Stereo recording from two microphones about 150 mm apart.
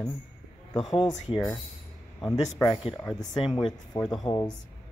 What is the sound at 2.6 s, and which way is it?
Speech, 35° left (ahead or behind).